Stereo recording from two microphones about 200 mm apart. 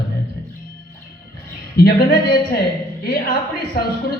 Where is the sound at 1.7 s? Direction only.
50° left (ahead or behind).